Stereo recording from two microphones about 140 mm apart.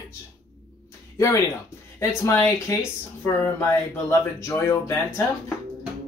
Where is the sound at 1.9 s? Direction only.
20° left (ahead or behind).